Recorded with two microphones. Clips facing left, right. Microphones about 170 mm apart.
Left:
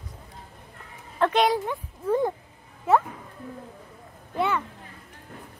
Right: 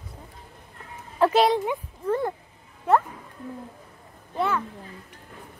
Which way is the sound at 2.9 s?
5° left (ahead or behind).